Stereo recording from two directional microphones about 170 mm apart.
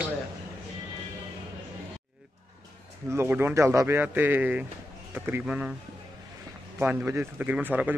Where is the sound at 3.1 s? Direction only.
15° right (ahead or behind).